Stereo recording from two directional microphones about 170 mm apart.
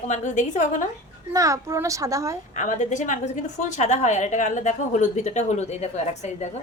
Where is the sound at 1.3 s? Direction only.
20° right (ahead or behind).